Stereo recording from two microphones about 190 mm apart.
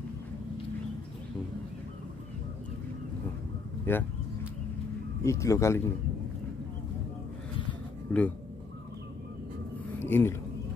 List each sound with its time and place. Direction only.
3.9 s a man's voice: 10° left (ahead or behind)
5.2 s a man's voice: 15° left (ahead or behind)
8.1 s speech: 5° left (ahead or behind)
9.9 s a sound: 10° left (ahead or behind)